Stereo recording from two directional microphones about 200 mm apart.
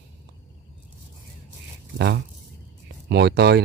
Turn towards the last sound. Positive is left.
turn(degrees=-55)  # may be behind; listen again after turning